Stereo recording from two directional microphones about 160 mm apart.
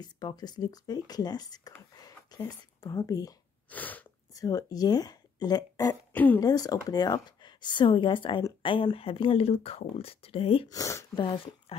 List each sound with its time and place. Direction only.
0.0 s speech: 25° left (ahead or behind)
3.7 s sneeze: 10° left (ahead or behind)
4.3 s speech: 20° left (ahead or behind)
6.1 s speech: 10° left (ahead or behind)
6.4 s speech: 25° left (ahead or behind)
10.7 s speech: 20° left (ahead or behind)
11.1 s speech: 30° left (ahead or behind)